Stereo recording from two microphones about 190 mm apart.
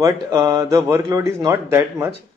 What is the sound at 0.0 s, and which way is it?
Speech, 15° right (ahead or behind).